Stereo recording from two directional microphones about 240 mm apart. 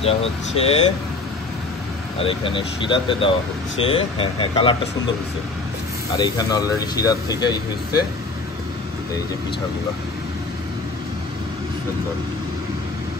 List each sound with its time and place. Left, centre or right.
0.0 s speech: left
2.1 s speech: left
6.1 s speech: centre